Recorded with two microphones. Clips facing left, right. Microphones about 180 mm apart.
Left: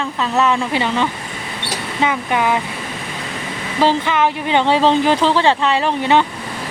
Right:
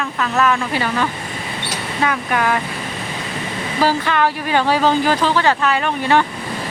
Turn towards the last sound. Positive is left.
turn(degrees=20)  # may be behind; listen again after turning